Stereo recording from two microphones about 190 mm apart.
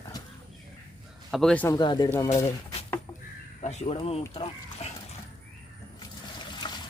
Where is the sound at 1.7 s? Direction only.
25° left (ahead or behind).